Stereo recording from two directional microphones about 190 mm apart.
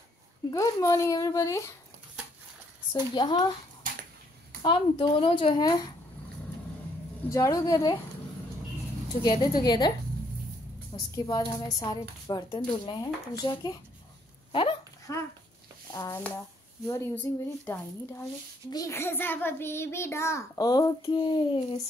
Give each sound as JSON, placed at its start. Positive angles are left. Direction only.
{"t": 0.5, "sound": "a child's voice", "side_deg": 20}
{"t": 2.9, "sound": "speech", "side_deg": 20}
{"t": 4.6, "sound": "speech", "side_deg": 30}
{"t": 7.2, "sound": "a child's voice", "side_deg": 15}
{"t": 9.2, "sound": "speech", "side_deg": 20}
{"t": 11.1, "sound": "speech", "side_deg": 20}
{"t": 15.1, "sound": "a child's voice", "side_deg": 15}